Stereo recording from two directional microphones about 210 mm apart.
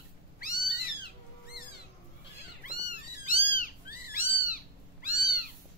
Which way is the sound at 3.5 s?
45° left (ahead or behind).